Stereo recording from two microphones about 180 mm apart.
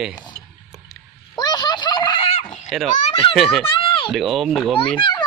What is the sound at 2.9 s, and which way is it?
Speech, 40° left (ahead or behind).